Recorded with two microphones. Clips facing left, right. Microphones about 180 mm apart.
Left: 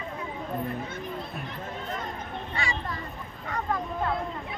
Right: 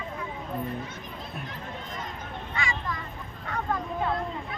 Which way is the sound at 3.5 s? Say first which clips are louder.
Even; centre (ahead or behind).